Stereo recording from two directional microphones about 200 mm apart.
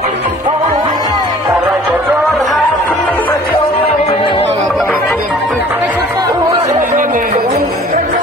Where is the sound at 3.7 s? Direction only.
25° left (ahead or behind).